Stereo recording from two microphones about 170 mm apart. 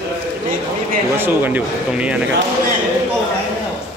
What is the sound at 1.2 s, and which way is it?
Speech, 10° right (ahead or behind).